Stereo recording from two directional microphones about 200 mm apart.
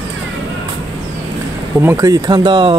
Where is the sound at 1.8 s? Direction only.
15° right (ahead or behind).